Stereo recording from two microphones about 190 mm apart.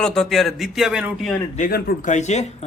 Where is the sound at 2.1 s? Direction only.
40° left (ahead or behind).